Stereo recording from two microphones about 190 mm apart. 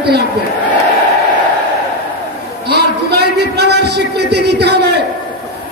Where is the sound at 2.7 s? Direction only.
60° right (ahead or behind).